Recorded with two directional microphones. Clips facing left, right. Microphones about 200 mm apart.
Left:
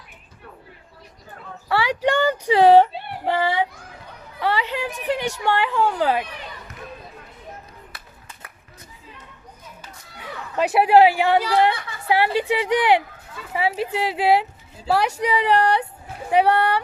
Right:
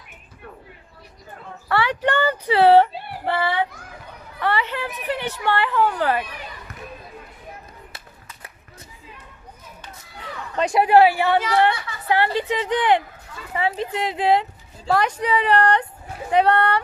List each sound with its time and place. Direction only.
1.7 s a woman's voice: 10° left (ahead or behind)
10.5 s speech: 5° left (ahead or behind)